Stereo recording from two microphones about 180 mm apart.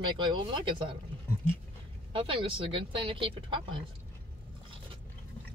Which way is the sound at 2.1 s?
30° right (ahead or behind).